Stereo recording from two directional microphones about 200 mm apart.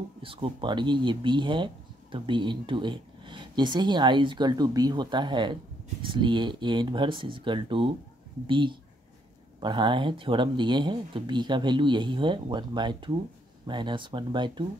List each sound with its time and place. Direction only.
0.2 s speech: 25° right (ahead or behind)